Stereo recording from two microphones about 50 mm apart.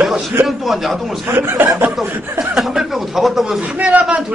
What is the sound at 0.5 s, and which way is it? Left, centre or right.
Speech, centre.